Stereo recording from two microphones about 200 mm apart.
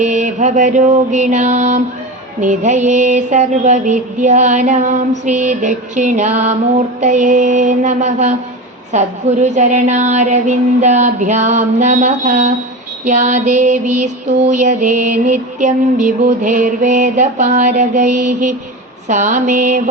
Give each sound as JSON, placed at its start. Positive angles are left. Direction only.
{"t": 0.0, "sound": "mantra", "side_deg": -40}